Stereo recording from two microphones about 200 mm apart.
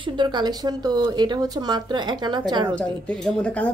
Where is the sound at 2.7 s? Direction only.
5° left (ahead or behind).